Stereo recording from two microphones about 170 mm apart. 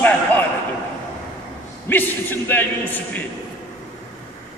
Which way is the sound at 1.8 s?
10° left (ahead or behind).